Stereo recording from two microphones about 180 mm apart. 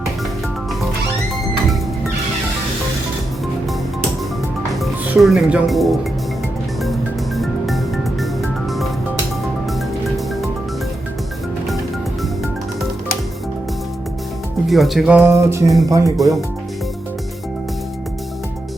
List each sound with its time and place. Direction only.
4.8 s speech: centre (ahead or behind)
8.2 s music: centre (ahead or behind)
14.7 s speech: centre (ahead or behind); by 16.1 s 15° right (ahead or behind)
16.1 s speech: centre (ahead or behind)